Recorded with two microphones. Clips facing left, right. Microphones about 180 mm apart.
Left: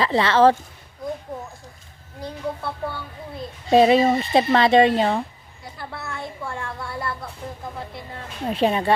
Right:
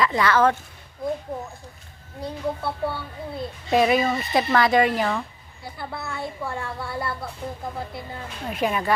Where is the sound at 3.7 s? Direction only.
30° left (ahead or behind).